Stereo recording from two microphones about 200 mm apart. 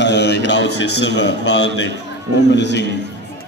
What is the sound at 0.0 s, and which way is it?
A man's voice, 60° left (ahead or behind).